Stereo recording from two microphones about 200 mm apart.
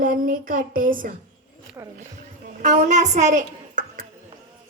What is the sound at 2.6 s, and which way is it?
A woman's voice, 35° right (ahead or behind).